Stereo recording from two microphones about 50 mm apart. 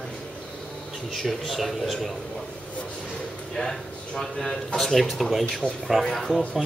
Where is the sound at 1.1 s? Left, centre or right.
Centre.